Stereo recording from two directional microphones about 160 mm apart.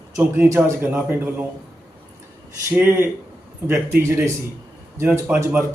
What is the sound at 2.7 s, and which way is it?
A man's voice, 15° right (ahead or behind).